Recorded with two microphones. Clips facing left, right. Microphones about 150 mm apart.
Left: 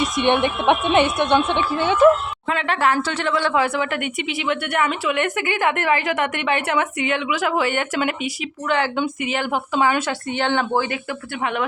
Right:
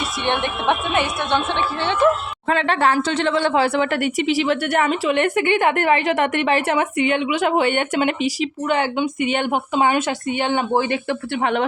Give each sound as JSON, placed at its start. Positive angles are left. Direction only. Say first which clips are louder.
{"t": 0.0, "sound": "a woman's voice", "louder": "left 4 dB", "side_deg": 15}
{"t": 2.5, "sound": "a woman's voice", "louder": "right 2 dB", "side_deg": -35}